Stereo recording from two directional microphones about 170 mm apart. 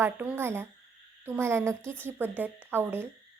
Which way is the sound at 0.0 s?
10° right (ahead or behind).